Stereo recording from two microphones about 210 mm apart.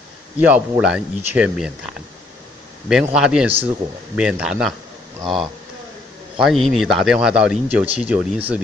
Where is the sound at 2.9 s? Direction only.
5° right (ahead or behind).